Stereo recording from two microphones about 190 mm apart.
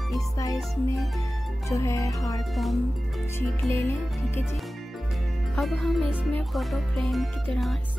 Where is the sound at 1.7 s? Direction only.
15° left (ahead or behind).